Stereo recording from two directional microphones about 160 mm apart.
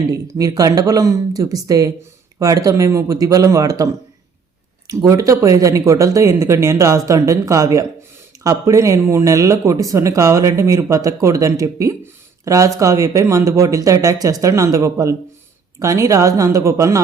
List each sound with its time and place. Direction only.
0.3 s speech: 25° right (ahead or behind)